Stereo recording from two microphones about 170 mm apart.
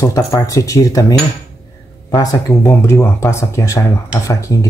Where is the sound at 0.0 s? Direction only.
20° left (ahead or behind).